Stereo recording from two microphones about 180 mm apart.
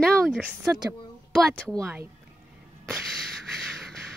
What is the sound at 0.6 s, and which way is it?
Speech, 15° right (ahead or behind).